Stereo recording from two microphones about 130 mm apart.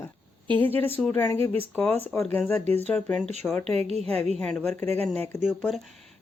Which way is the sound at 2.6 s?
55° right (ahead or behind).